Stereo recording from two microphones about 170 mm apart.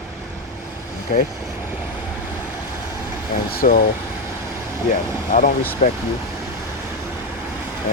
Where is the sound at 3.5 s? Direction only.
55° left (ahead or behind).